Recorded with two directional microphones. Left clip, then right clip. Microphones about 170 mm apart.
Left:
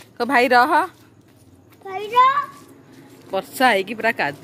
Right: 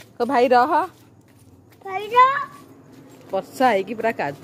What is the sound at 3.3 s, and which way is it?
A woman's voice, 5° right (ahead or behind).